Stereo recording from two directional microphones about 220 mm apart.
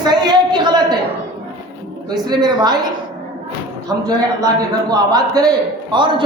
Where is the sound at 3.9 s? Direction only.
15° right (ahead or behind).